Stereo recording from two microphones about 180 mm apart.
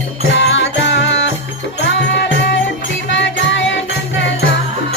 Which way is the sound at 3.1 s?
85° left.